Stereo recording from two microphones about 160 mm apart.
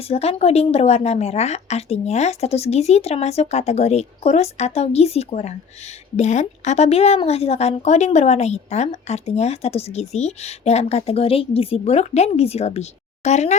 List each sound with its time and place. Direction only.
0.1 s a woman's voice: 40° left (ahead or behind)